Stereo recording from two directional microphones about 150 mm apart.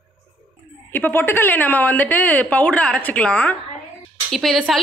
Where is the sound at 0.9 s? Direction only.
15° left (ahead or behind).